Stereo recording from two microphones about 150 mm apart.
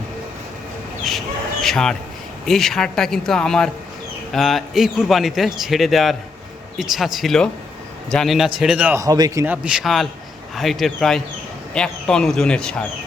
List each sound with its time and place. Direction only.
1.6 s a man's voice: 5° left (ahead or behind)
9.0 s a man's voice: 25° right (ahead or behind)
9.4 s a man's voice: 10° right (ahead or behind)